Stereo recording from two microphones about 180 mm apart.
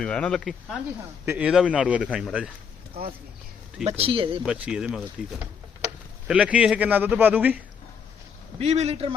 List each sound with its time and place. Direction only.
0.0 s speech: 5° left (ahead or behind)
1.2 s a man's voice: 10° right (ahead or behind)
3.8 s speech: 30° right (ahead or behind)
4.4 s speech: 5° right (ahead or behind)
6.2 s a man's voice: 5° right (ahead or behind)
8.5 s speech: 35° right (ahead or behind)